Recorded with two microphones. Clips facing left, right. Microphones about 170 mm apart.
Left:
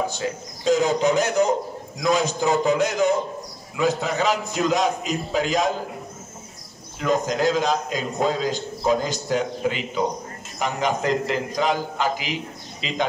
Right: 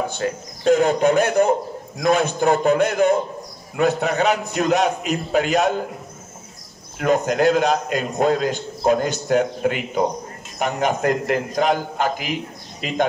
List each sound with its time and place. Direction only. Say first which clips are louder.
0.1 s a man's voice: right 3 dB; 55° right (ahead or behind)
7.0 s a man's voice: right 4 dB; 60° right (ahead or behind)